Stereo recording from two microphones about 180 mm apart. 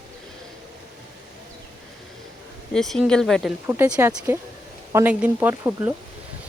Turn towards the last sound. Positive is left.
turn(degrees=-10)  # may be behind; listen again after turning